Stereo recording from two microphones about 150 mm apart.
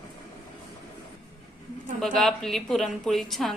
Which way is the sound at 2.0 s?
5° left (ahead or behind).